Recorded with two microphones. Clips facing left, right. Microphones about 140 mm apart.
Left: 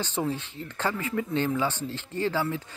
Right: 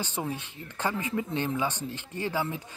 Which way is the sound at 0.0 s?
15° right (ahead or behind).